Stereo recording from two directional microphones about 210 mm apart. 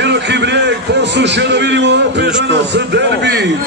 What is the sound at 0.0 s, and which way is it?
A man's voice, 55° right (ahead or behind).